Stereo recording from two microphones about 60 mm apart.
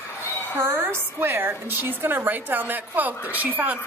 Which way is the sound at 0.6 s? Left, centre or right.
Right.